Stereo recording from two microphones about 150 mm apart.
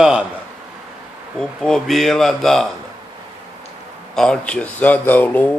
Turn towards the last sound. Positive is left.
turn(degrees=10)  # may be behind; listen again after turning